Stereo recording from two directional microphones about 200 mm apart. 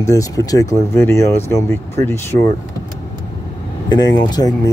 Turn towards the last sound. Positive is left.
turn(degrees=20)  # may be behind; listen again after turning